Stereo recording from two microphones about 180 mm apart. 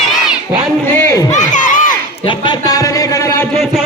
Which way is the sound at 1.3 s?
45° left (ahead or behind).